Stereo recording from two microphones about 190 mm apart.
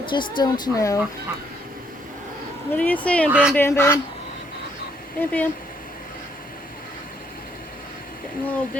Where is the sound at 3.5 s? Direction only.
15° left (ahead or behind).